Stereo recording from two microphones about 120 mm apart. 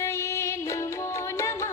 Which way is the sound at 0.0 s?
20° left (ahead or behind).